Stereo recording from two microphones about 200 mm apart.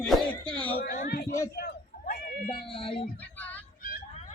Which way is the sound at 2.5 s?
25° left (ahead or behind).